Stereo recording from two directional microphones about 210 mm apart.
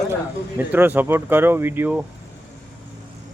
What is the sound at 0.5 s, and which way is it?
Speech, 10° right (ahead or behind).